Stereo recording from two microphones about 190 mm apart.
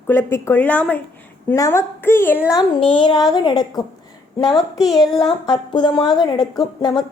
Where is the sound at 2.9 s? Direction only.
20° left (ahead or behind).